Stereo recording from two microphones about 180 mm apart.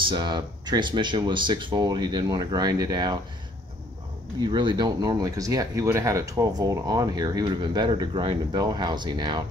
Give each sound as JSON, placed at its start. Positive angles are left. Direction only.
{"t": 0.0, "sound": "speech", "side_deg": -25}
{"t": 4.4, "sound": "speech", "side_deg": -25}